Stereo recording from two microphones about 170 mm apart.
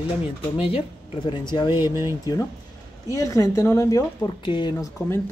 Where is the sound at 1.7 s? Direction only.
15° right (ahead or behind).